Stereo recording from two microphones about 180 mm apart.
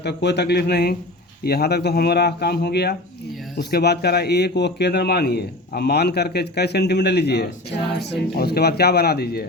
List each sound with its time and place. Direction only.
0.0 s a man's voice: 70° left (ahead or behind)